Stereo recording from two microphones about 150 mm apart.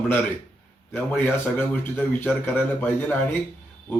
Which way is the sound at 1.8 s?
10° left (ahead or behind).